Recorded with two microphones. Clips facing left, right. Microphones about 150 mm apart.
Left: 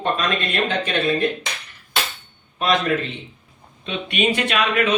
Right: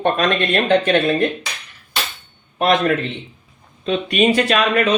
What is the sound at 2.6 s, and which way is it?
Speech, 55° right (ahead or behind).